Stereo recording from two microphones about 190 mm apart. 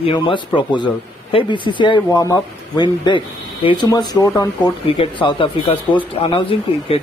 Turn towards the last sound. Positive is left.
turn(degrees=25)  # may be behind; listen again after turning